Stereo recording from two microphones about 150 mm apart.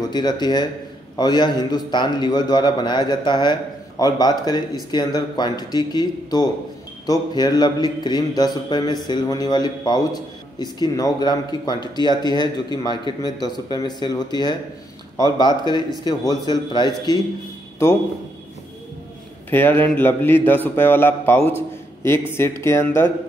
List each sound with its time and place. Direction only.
0.1 s speech: 30° left (ahead or behind)
19.5 s a man's voice: 15° left (ahead or behind)